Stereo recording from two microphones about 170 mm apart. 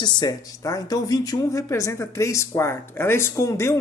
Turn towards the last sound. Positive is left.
turn(degrees=15)  # may be behind; listen again after turning